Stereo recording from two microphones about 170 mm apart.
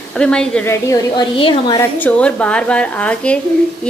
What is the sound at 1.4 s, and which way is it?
Speech, 30° left (ahead or behind).